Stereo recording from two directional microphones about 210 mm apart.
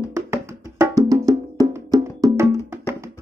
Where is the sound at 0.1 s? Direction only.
15° right (ahead or behind).